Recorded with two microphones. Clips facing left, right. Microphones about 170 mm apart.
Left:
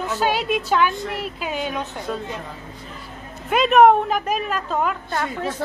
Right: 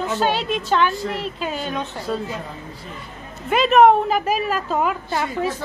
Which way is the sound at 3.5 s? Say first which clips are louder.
Even; centre (ahead or behind).